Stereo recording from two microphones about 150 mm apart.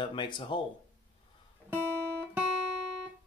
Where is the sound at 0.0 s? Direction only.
35° left (ahead or behind).